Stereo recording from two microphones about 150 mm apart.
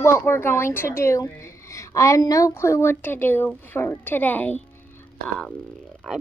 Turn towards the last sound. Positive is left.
turn(degrees=0)  # may be behind; listen again after turning